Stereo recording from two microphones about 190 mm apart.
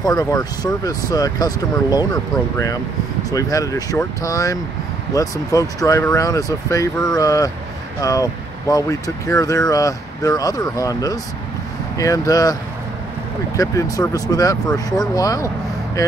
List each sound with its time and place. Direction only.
0.0 s speech: 20° left (ahead or behind)
13.6 s speech: 20° left (ahead or behind)